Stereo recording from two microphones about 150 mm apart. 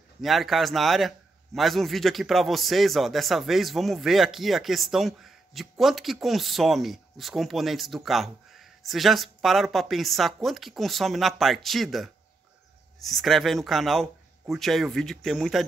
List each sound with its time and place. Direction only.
0.2 s a man's voice: centre (ahead or behind)